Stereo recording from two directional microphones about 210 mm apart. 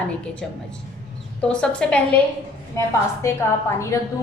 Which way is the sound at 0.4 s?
5° left (ahead or behind).